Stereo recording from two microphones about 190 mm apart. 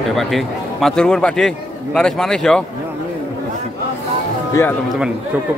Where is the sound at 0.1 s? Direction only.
Centre (ahead or behind).